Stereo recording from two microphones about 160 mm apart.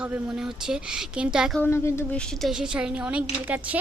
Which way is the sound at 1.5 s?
15° left (ahead or behind).